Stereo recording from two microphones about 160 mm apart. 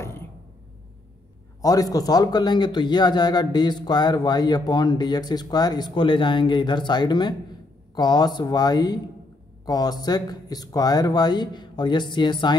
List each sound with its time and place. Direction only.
1.6 s speech: 25° left (ahead or behind)